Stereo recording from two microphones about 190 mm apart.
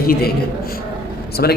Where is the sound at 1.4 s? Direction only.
55° left (ahead or behind).